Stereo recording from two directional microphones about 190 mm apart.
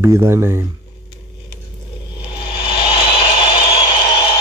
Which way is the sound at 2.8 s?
25° left (ahead or behind).